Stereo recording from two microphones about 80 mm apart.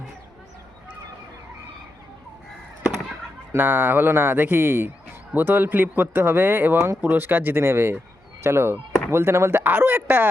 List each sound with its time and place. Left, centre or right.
3.5 s speech: right